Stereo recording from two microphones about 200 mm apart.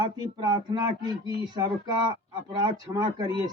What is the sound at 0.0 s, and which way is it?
Speech, 20° right (ahead or behind).